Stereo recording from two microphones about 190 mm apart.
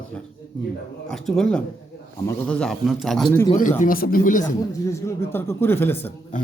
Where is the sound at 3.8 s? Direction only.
50° left (ahead or behind).